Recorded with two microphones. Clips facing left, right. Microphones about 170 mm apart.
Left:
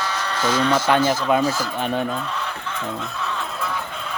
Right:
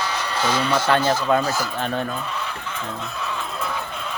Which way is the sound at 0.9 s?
15° left (ahead or behind).